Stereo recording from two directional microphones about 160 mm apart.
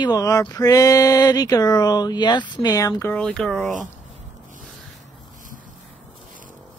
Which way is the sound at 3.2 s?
5° left (ahead or behind).